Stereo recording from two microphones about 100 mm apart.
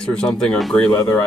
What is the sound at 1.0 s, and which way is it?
Speech, 20° left (ahead or behind).